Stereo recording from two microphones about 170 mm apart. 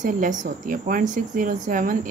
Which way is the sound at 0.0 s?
50° right (ahead or behind).